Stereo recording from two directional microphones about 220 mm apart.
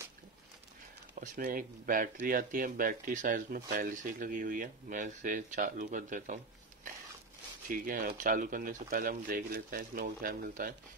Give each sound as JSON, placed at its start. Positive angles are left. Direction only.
{"t": 1.2, "sound": "speech", "side_deg": -35}